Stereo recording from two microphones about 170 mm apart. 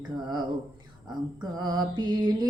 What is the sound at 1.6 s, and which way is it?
Music, 25° right (ahead or behind).